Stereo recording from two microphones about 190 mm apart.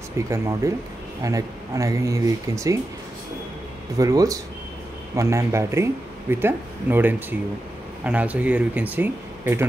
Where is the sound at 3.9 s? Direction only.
15° right (ahead or behind).